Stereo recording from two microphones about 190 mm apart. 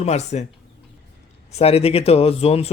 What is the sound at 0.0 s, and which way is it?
Speech, 35° left (ahead or behind).